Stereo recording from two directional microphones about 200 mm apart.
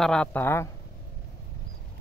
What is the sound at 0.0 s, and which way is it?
Speech, 5° left (ahead or behind).